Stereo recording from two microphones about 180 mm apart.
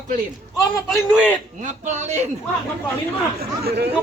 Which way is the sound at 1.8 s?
40° right (ahead or behind).